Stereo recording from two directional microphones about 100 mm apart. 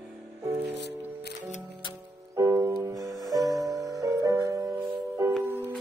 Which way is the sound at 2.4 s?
30° right (ahead or behind).